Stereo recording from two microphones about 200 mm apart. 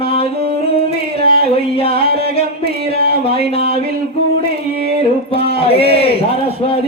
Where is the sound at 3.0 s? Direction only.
30° left (ahead or behind).